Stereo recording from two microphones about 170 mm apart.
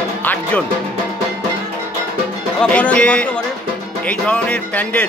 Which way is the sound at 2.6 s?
10° left (ahead or behind).